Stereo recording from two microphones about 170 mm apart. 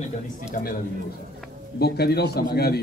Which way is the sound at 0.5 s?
45° left (ahead or behind).